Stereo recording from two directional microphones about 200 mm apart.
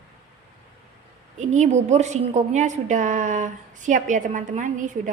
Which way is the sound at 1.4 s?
35° right (ahead or behind).